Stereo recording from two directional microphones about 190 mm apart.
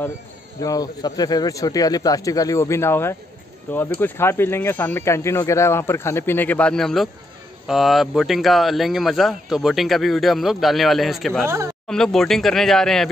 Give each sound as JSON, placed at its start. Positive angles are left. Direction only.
{"t": 0.6, "sound": "speech", "side_deg": 20}
{"t": 11.4, "sound": "speech", "side_deg": -15}
{"t": 11.9, "sound": "speech", "side_deg": 5}